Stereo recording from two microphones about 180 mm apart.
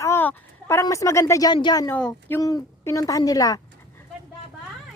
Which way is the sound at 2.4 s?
20° left (ahead or behind).